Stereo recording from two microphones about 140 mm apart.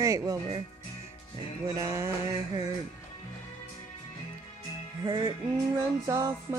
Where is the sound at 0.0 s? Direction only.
20° right (ahead or behind).